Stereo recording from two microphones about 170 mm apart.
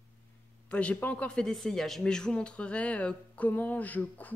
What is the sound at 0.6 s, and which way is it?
Speech, 5° left (ahead or behind).